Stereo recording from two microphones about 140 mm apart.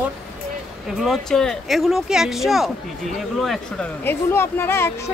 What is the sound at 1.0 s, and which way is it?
A woman's voice, centre (ahead or behind).